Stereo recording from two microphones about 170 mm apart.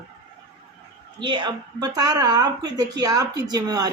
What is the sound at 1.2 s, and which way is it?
Speech, 25° right (ahead or behind).